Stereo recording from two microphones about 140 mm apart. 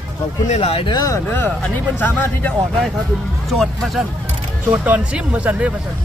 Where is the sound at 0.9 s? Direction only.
25° left (ahead or behind).